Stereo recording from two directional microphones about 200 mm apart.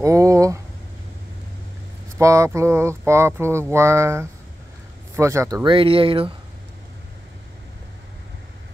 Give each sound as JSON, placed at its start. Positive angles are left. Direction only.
{"t": 0.0, "sound": "speech", "side_deg": -15}
{"t": 2.1, "sound": "speech", "side_deg": -15}